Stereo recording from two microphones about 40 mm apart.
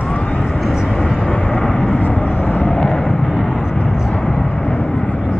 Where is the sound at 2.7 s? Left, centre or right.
Centre.